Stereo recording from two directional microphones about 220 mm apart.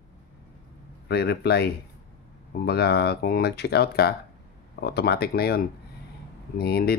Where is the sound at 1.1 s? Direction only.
50° left (ahead or behind).